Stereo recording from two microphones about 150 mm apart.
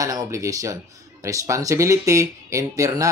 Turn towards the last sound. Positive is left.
turn(degrees=-20)  # may be behind; listen again after turning